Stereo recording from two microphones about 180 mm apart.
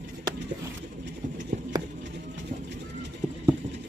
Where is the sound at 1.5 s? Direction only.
45° right (ahead or behind).